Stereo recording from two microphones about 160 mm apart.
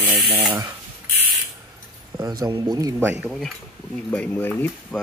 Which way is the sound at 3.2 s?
5° left (ahead or behind).